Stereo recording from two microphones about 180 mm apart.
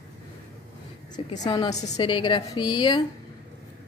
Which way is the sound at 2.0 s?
25° left (ahead or behind).